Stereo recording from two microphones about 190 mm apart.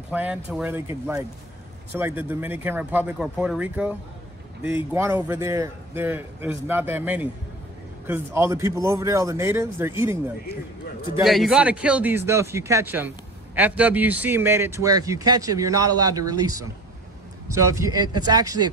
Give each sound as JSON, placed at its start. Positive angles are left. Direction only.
{"t": 0.1, "sound": "a man's voice", "side_deg": -5}
{"t": 4.9, "sound": "a man's voice", "side_deg": -10}
{"t": 11.2, "sound": "a man's voice", "side_deg": 0}